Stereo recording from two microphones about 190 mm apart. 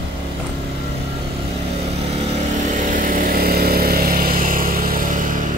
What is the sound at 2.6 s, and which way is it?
Vehicle, 40° right (ahead or behind).